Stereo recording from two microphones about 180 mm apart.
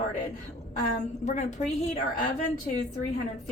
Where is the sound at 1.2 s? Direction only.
40° left (ahead or behind).